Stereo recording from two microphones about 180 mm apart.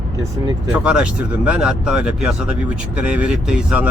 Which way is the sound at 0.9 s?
5° right (ahead or behind).